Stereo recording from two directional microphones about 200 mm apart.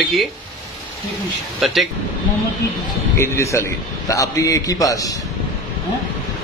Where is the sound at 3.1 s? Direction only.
15° left (ahead or behind).